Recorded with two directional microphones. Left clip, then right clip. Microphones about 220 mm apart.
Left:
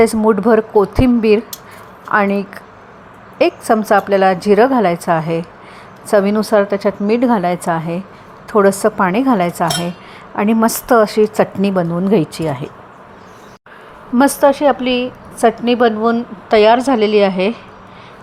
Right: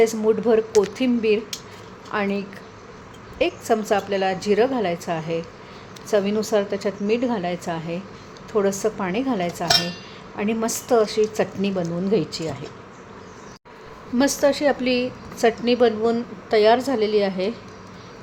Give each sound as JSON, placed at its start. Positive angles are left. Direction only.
{"t": 0.0, "sound": "a woman's voice", "side_deg": 20}
{"t": 14.2, "sound": "a woman's voice", "side_deg": 20}